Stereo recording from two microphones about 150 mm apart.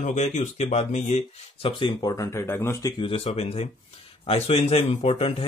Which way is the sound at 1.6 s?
35° left (ahead or behind).